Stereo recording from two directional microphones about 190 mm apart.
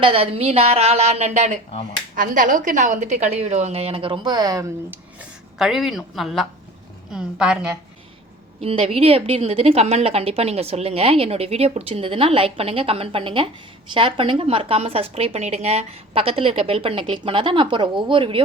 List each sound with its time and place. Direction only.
0.0 s a woman's voice: 30° right (ahead or behind)
5.5 s speech: centre (ahead or behind)
8.6 s a woman's voice: 30° right (ahead or behind)